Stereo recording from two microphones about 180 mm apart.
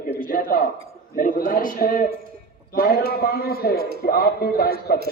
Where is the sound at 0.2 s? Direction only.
55° left (ahead or behind).